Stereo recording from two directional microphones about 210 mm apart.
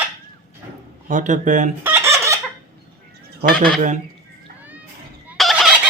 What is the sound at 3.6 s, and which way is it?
Speech, 35° right (ahead or behind).